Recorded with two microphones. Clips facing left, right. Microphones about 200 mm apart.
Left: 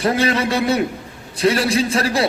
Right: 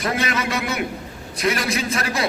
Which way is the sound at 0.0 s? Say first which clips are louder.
Left 6 dB; 30° left (ahead or behind).